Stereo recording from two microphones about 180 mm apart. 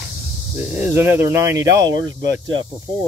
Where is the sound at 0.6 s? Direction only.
5° right (ahead or behind).